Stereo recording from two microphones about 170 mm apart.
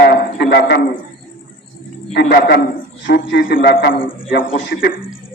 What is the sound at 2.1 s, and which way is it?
Speech, 70° left (ahead or behind).